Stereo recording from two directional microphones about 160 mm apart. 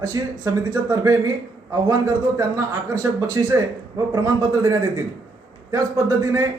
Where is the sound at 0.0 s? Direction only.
20° right (ahead or behind).